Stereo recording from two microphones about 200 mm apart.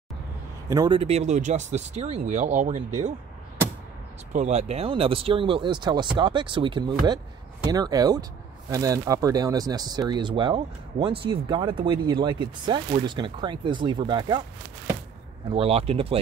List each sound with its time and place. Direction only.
0.7 s speech: 20° right (ahead or behind); by 2.8 s 35° right (ahead or behind)
4.3 s speech: 35° right (ahead or behind)
15.5 s speech: 30° right (ahead or behind)